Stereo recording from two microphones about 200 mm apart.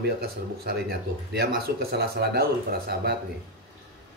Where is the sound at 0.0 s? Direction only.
50° right (ahead or behind).